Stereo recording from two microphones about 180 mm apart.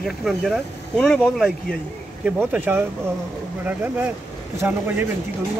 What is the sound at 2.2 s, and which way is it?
Speech, 10° right (ahead or behind).